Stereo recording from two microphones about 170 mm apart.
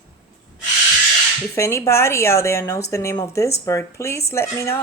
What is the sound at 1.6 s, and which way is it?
Speech, 15° left (ahead or behind).